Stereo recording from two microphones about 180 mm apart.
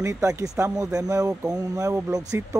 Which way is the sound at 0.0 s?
15° right (ahead or behind).